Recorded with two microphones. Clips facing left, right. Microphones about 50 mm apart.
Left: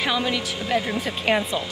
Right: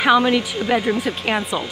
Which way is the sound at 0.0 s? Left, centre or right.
Centre.